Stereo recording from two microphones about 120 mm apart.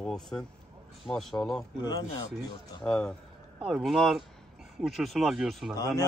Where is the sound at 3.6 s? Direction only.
Centre (ahead or behind).